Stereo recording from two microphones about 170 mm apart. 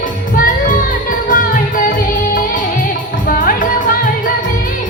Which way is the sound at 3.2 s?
55° left (ahead or behind).